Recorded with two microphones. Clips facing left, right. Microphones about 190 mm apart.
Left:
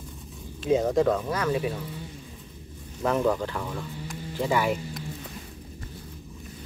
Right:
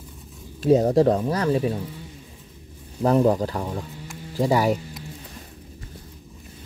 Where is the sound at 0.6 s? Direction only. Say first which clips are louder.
Right 5 dB; 40° right (ahead or behind).